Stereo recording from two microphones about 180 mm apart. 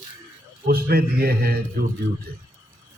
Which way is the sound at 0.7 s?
55° right (ahead or behind).